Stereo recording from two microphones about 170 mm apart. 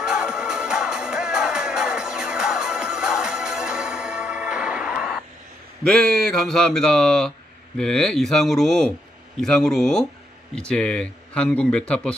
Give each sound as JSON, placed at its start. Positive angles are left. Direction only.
{"t": 0.0, "sound": "music", "side_deg": -5}
{"t": 5.9, "sound": "speech", "side_deg": 5}